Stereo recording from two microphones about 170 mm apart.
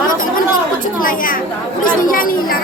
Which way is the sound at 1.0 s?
55° left (ahead or behind).